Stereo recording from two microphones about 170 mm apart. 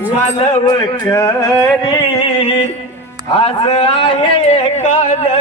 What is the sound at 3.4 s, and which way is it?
Speech, 35° left (ahead or behind).